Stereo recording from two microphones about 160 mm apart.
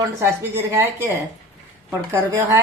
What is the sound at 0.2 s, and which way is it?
A woman's voice, 15° right (ahead or behind).